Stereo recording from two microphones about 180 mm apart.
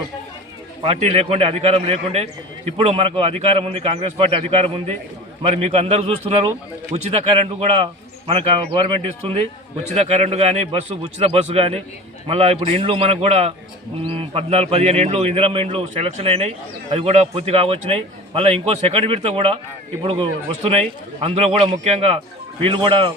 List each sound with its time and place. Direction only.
0.8 s a man's voice: 35° right (ahead or behind)